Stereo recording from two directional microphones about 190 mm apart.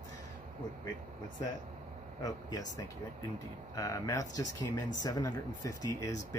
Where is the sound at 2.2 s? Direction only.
20° left (ahead or behind).